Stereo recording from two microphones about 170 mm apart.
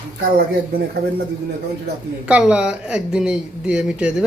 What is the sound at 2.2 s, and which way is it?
Speech, 5° right (ahead or behind).